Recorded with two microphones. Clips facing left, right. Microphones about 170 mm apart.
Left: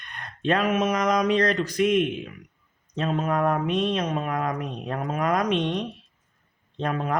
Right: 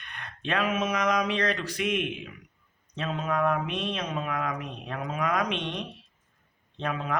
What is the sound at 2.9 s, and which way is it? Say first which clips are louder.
Mantra: left 4 dB; 45° left (ahead or behind).